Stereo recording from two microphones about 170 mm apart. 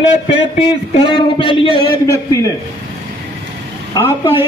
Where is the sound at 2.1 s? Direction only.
15° left (ahead or behind).